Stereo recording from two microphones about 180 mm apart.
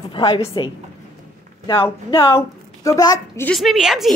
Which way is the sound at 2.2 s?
15° left (ahead or behind).